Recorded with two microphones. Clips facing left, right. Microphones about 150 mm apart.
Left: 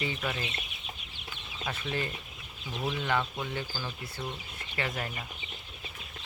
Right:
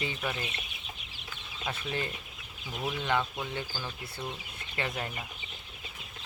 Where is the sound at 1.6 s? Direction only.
15° right (ahead or behind).